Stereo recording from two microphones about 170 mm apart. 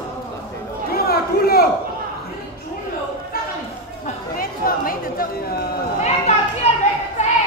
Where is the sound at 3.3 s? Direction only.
60° left (ahead or behind).